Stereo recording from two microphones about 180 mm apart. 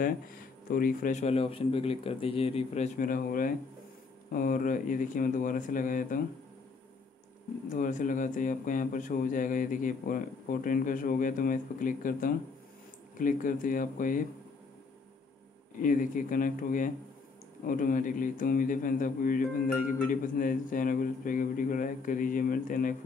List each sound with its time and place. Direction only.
0.7 s speech: 50° left (ahead or behind)
7.7 s speech: 45° left (ahead or behind)
15.8 s speech: 45° left (ahead or behind)